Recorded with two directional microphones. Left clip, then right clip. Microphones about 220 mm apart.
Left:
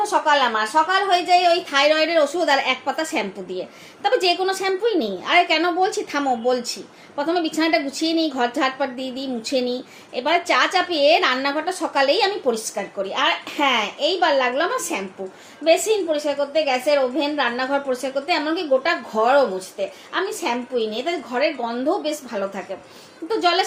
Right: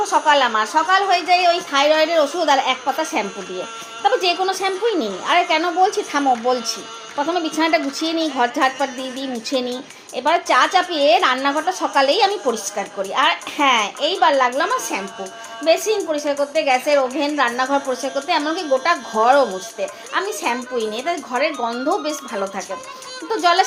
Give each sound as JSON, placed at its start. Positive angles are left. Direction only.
{"t": 0.0, "sound": "a woman's voice", "side_deg": -30}
{"t": 23.4, "sound": "a woman's voice", "side_deg": -25}